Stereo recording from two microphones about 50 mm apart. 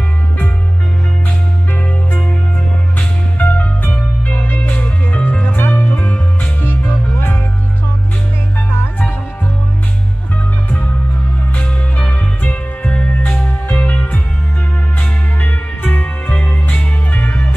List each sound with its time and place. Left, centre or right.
3.0 s music: left
4.6 s music: left
5.9 s music: left
6.6 s music: left
11.6 s music: left